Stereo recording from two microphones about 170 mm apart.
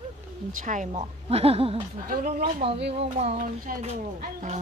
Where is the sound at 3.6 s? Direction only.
45° right (ahead or behind).